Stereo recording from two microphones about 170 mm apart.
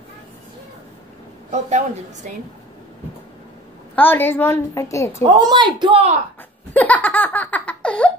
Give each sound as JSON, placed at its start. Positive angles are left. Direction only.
{"t": 1.5, "sound": "a woman's voice", "side_deg": -45}
{"t": 3.9, "sound": "a woman's voice", "side_deg": 10}
{"t": 5.2, "sound": "a woman's voice", "side_deg": -30}
{"t": 6.7, "sound": "laughter", "side_deg": 10}